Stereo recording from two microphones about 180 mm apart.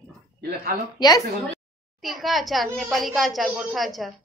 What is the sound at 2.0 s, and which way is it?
A child's voice, centre (ahead or behind).